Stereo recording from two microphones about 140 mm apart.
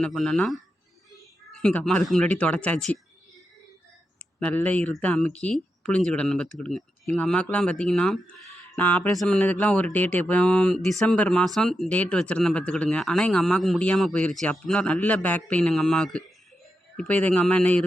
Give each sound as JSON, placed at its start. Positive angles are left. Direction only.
{"t": 0.0, "sound": "speech", "side_deg": 5}
{"t": 1.6, "sound": "speech", "side_deg": 5}
{"t": 4.4, "sound": "speech", "side_deg": 10}
{"t": 9.1, "sound": "speech", "side_deg": 0}
{"t": 9.4, "sound": "speech", "side_deg": 10}